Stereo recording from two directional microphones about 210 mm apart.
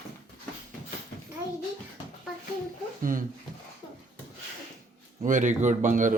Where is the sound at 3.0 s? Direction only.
40° right (ahead or behind).